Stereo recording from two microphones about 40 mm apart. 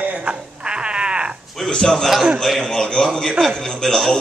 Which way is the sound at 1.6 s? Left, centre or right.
Centre.